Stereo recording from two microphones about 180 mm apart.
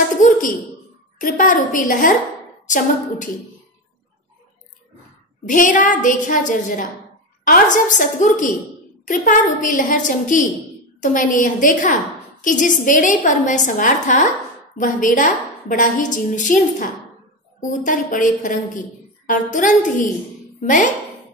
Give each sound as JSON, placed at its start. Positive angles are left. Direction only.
{"t": 0.1, "sound": "a sound", "side_deg": 45}
{"t": 1.1, "sound": "a woman's voice", "side_deg": 45}
{"t": 5.5, "sound": "a woman's voice", "side_deg": 45}